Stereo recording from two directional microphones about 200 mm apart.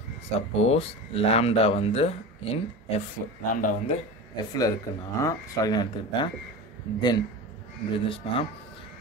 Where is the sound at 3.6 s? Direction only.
40° left (ahead or behind).